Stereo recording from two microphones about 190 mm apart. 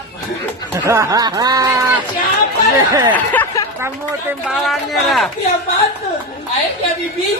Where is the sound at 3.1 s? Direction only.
10° left (ahead or behind).